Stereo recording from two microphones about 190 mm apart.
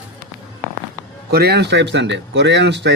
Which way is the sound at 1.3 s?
60° right (ahead or behind).